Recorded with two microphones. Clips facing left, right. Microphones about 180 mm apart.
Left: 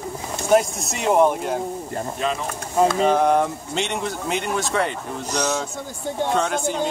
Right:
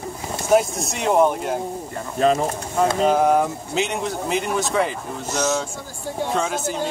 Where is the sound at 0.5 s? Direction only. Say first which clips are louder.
Even; centre (ahead or behind).